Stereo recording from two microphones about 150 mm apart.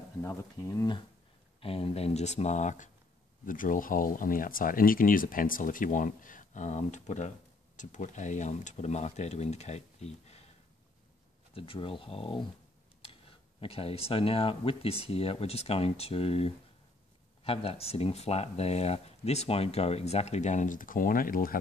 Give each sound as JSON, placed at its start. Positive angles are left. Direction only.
{"t": 0.2, "sound": "speech", "side_deg": 20}
{"t": 1.6, "sound": "speech", "side_deg": 40}
{"t": 3.4, "sound": "speech", "side_deg": 65}
{"t": 11.5, "sound": "speech", "side_deg": 35}
{"t": 13.0, "sound": "a sound", "side_deg": 40}
{"t": 13.6, "sound": "speech", "side_deg": 40}